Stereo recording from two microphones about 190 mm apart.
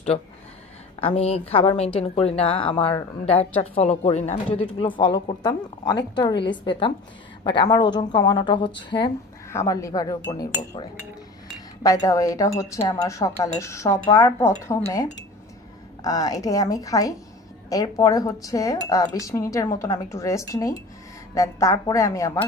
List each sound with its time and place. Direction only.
1.0 s a woman's voice: 30° left (ahead or behind)
16.0 s speech: 20° left (ahead or behind)